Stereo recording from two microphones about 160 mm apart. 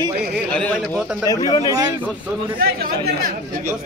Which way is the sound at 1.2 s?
25° left (ahead or behind).